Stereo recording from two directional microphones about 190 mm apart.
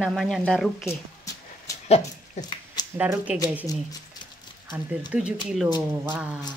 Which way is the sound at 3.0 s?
10° right (ahead or behind).